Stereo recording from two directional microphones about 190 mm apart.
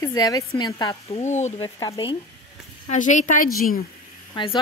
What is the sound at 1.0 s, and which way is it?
Speech, 35° left (ahead or behind).